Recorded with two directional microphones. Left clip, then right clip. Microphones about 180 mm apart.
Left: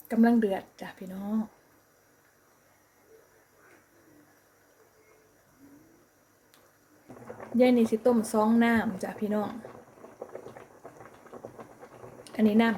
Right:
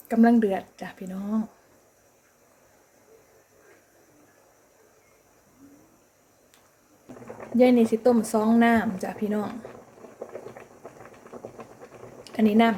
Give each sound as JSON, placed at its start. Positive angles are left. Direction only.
{"t": 0.1, "sound": "speech", "side_deg": -5}
{"t": 7.3, "sound": "speech", "side_deg": -10}
{"t": 12.2, "sound": "speech", "side_deg": -10}